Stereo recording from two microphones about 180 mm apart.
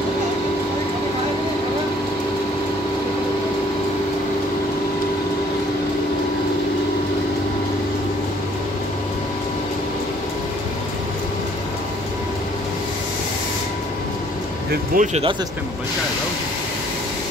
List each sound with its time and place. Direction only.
14.9 s speech: 50° right (ahead or behind)